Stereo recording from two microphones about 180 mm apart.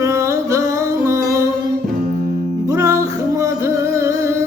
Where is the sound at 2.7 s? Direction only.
20° right (ahead or behind).